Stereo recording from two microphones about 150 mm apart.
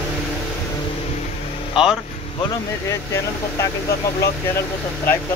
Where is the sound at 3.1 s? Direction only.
20° left (ahead or behind).